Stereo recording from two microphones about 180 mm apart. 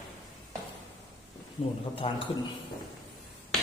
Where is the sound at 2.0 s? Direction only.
30° left (ahead or behind).